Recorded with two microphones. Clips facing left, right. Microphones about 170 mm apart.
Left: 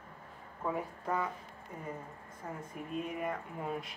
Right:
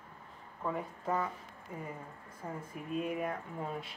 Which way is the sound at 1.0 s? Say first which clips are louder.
Right 1 dB; 5° right (ahead or behind).